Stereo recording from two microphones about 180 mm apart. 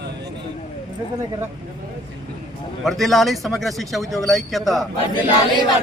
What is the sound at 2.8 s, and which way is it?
Speech, centre (ahead or behind).